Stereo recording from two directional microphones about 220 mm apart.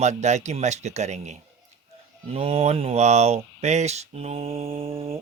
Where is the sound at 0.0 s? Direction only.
30° right (ahead or behind).